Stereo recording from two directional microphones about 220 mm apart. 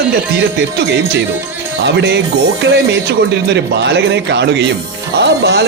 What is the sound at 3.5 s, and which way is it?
Speech, 50° right (ahead or behind).